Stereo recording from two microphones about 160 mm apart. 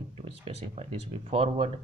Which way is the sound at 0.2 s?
40° right (ahead or behind).